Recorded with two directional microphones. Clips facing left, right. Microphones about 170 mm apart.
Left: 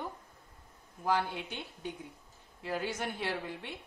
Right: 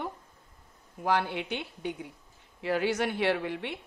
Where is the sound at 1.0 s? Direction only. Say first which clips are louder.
Right 4 dB; 75° right (ahead or behind).